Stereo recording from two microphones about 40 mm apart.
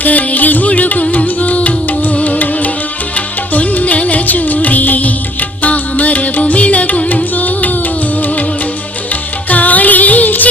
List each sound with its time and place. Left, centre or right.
0.0 s music: left
9.5 s music: left